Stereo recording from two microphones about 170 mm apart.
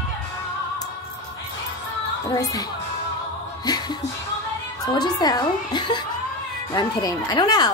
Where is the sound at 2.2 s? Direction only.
20° left (ahead or behind).